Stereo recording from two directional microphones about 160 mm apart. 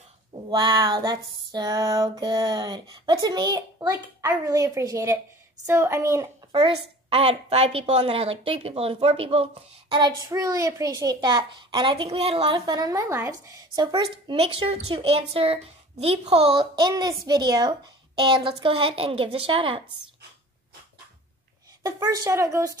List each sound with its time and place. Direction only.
0.5 s female singing: 25° right (ahead or behind)
5.7 s speech: 15° right (ahead or behind)
6.5 s a woman's voice: 35° right (ahead or behind); by 13.6 s 15° right (ahead or behind)
14.1 s a woman's voice: 35° right (ahead or behind)
21.8 s female singing: 20° right (ahead or behind)